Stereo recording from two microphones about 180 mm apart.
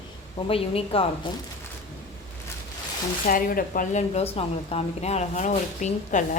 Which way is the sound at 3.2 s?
50° left (ahead or behind).